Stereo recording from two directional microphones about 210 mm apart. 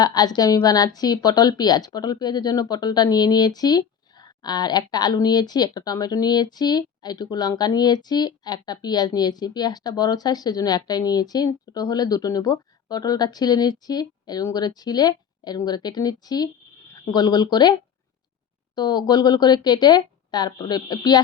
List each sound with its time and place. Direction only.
0.0 s a woman's voice: 20° left (ahead or behind)